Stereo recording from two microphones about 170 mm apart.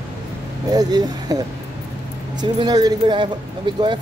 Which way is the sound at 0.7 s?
25° right (ahead or behind).